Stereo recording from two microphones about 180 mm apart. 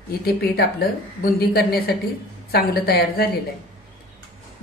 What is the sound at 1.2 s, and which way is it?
Speech, 60° left (ahead or behind).